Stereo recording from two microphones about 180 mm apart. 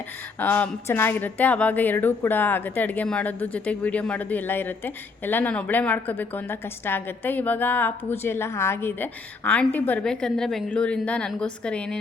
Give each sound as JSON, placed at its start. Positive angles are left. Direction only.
{"t": 0.3, "sound": "a woman's voice", "side_deg": 10}